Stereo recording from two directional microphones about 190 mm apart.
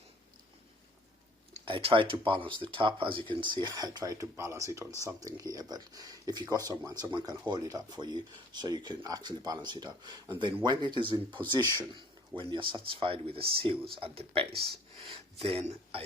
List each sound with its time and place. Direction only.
1.5 s speech: 30° right (ahead or behind)